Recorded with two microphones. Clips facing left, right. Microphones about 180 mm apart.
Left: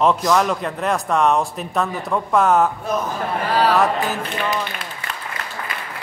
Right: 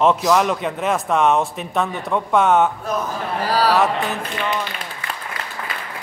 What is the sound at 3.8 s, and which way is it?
Speech, centre (ahead or behind).